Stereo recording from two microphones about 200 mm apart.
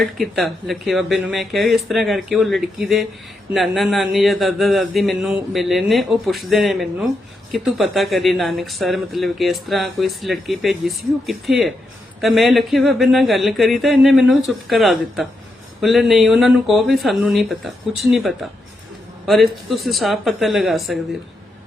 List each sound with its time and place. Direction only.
0.0 s speech: centre (ahead or behind)